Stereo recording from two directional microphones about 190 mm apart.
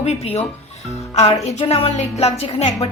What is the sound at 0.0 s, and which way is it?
Speech, 35° left (ahead or behind).